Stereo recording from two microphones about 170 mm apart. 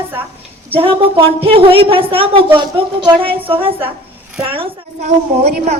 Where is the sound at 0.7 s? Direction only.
35° right (ahead or behind).